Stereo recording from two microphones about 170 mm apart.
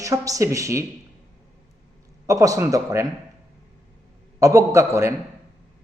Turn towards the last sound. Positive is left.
turn(degrees=-15)  # may be behind; listen again after turning